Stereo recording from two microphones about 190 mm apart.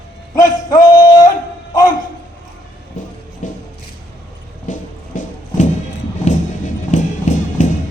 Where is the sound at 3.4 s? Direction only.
40° left (ahead or behind).